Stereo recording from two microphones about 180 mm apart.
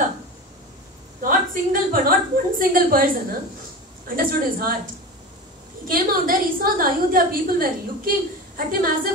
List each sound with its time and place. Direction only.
1.2 s a woman's voice: 50° right (ahead or behind)
5.9 s a woman's voice: 50° right (ahead or behind)